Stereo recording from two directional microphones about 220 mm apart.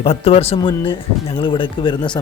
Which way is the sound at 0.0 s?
25° left (ahead or behind).